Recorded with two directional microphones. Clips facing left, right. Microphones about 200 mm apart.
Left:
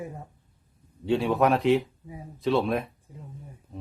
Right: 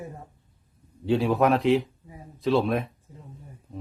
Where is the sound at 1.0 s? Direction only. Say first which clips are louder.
Right 1 dB; centre (ahead or behind).